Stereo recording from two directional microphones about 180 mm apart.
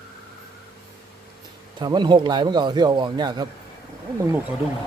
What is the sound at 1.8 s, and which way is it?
Speech, 25° right (ahead or behind).